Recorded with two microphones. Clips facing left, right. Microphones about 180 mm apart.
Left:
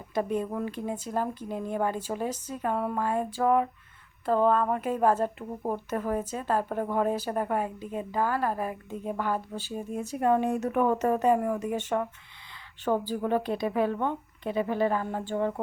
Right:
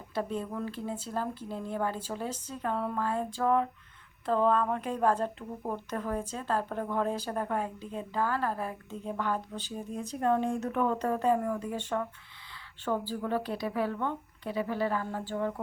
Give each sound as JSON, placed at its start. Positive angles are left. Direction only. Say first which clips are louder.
{"t": 0.1, "sound": "a woman's voice", "louder": "left 5 dB", "side_deg": 15}